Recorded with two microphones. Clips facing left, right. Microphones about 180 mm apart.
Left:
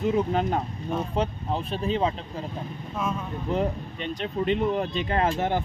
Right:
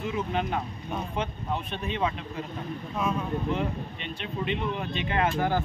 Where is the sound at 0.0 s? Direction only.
40° left (ahead or behind).